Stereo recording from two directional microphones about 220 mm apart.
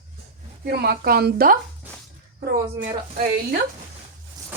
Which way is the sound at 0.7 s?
45° right (ahead or behind).